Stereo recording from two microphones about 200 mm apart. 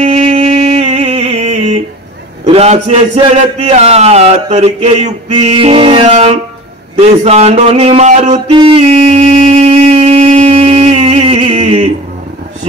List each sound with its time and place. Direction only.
0.0 s music: 30° right (ahead or behind)
2.4 s a man's voice: 30° right (ahead or behind)
7.0 s a sound: 35° right (ahead or behind)